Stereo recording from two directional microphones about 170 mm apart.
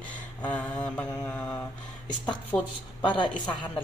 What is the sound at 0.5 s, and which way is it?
Mantra, 5° left (ahead or behind).